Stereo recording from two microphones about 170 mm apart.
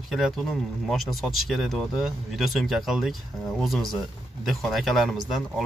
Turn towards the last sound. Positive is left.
turn(degrees=0)  # may be behind; listen again after turning